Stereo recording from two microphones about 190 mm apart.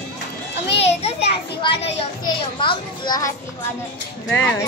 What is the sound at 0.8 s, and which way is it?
Children playing, 35° left (ahead or behind).